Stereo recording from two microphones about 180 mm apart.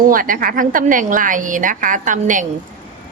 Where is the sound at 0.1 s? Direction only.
50° right (ahead or behind).